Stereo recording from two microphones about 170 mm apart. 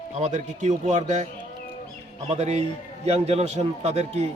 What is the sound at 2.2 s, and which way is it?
A man's voice, 40° right (ahead or behind).